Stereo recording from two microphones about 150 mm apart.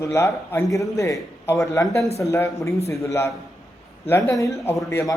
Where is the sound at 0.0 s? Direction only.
20° left (ahead or behind).